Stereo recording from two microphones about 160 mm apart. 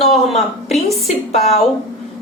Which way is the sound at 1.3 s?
40° left (ahead or behind).